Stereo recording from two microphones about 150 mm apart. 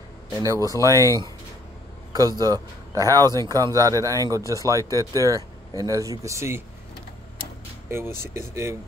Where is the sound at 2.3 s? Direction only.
25° right (ahead or behind).